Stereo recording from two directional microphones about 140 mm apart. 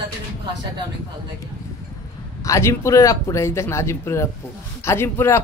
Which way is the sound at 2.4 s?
20° left (ahead or behind).